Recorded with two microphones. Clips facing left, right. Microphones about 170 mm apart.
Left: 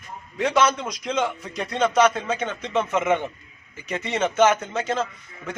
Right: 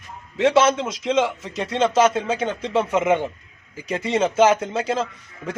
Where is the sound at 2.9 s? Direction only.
10° right (ahead or behind).